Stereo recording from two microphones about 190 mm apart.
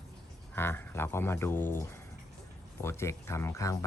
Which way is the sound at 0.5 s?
10° left (ahead or behind).